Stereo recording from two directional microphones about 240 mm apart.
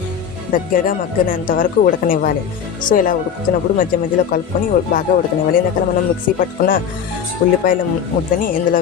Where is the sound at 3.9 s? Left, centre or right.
Left.